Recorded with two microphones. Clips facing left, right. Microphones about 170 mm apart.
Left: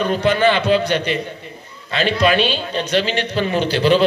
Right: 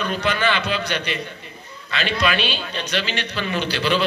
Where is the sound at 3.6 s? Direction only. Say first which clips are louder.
Left 7 dB; 45° left (ahead or behind).